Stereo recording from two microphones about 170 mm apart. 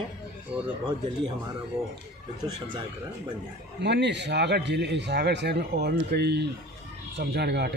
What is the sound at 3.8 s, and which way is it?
Speech, 85° right.